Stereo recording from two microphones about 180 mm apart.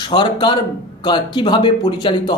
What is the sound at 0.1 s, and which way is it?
Speech, 25° left (ahead or behind).